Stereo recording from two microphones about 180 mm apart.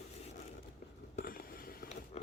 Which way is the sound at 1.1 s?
55° left (ahead or behind).